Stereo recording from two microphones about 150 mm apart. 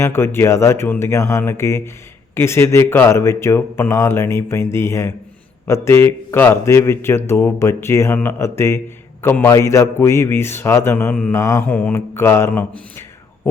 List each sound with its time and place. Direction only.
0.0 s a man's voice: 15° left (ahead or behind)